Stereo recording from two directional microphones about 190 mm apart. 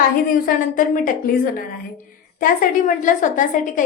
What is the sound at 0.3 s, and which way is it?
Speech, 45° left (ahead or behind).